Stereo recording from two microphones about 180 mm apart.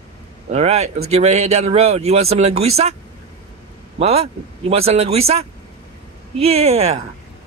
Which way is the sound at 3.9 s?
35° right (ahead or behind).